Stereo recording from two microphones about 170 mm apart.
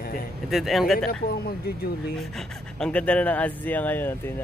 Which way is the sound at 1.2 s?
65° left (ahead or behind).